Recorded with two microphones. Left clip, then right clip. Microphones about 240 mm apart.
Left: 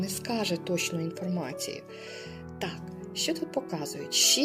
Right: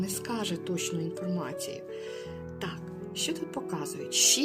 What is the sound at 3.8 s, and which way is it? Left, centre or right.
Speech, centre.